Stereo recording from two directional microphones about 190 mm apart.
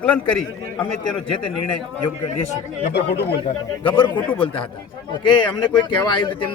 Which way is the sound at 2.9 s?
65° left (ahead or behind).